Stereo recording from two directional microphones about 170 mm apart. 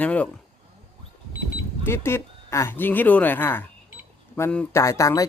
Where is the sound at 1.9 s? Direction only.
15° left (ahead or behind).